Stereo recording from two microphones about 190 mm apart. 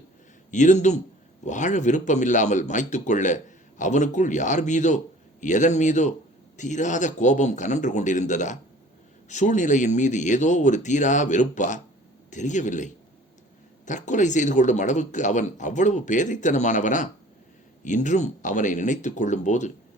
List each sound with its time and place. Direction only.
0.5 s speech: 40° left (ahead or behind)